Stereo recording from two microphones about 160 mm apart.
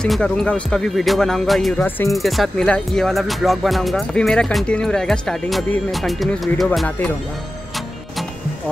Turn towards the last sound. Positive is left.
turn(degrees=5)  # may be behind; listen again after turning